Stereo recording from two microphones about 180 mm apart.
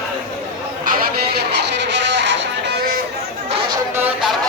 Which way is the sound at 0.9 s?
60° right (ahead or behind).